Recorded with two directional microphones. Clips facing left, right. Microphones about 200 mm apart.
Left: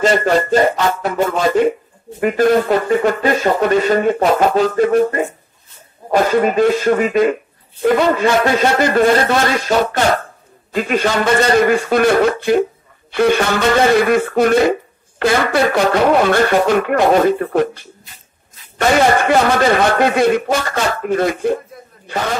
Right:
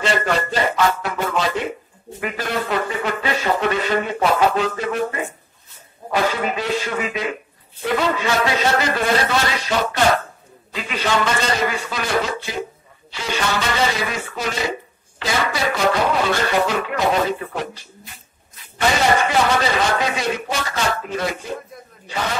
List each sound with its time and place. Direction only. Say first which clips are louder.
0.0 s music: left 7 dB; 45° left (ahead or behind)
2.1 s a man's voice: left 12 dB; 45° left (ahead or behind)